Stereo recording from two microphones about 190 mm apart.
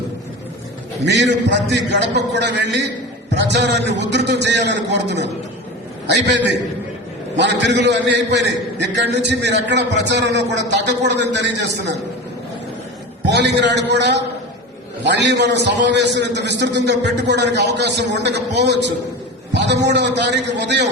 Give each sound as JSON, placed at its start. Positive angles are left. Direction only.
{"t": 1.0, "sound": "a man's voice", "side_deg": -65}
{"t": 13.2, "sound": "a man's voice", "side_deg": -65}